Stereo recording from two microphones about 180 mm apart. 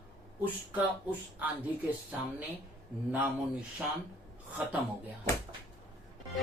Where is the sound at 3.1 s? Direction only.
10° right (ahead or behind).